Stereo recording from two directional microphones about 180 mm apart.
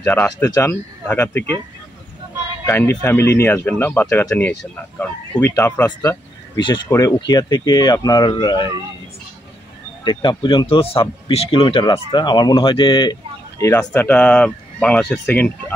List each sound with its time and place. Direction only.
0.0 s speech: 10° left (ahead or behind)
2.6 s speech: 10° left (ahead or behind)
10.0 s speech: 25° left (ahead or behind); by 15.5 s 5° left (ahead or behind)